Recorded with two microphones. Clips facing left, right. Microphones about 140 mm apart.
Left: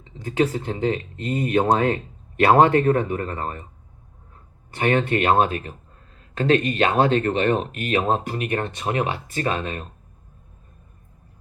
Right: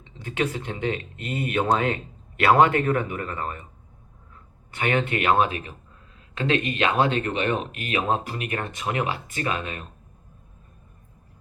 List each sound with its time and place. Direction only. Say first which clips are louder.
0.0 s speech: left 5 dB; 35° left (ahead or behind)
4.7 s speech: left 4 dB; 35° left (ahead or behind)